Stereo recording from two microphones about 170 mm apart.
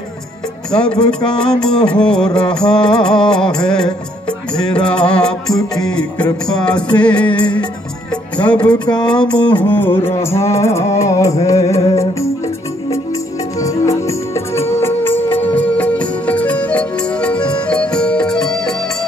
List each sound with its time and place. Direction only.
0.7 s music: 5° left (ahead or behind)
9.0 s music: 5° left (ahead or behind)
13.6 s music: 20° left (ahead or behind); by 18.8 s 5° left (ahead or behind)